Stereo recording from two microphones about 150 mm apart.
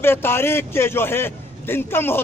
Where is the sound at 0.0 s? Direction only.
15° left (ahead or behind).